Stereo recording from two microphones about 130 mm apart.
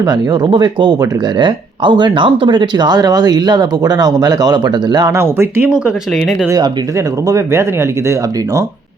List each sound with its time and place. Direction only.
0.0 s speech: 30° right (ahead or behind)
6.1 s speech: centre (ahead or behind)
6.5 s speech: 25° right (ahead or behind)